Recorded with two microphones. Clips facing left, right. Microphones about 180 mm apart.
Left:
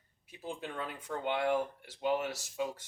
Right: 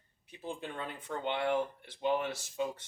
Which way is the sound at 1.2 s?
10° left (ahead or behind).